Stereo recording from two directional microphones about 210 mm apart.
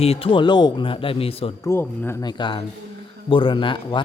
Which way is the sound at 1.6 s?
10° left (ahead or behind).